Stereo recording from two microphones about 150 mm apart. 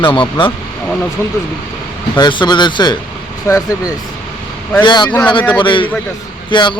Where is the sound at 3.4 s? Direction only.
20° left (ahead or behind).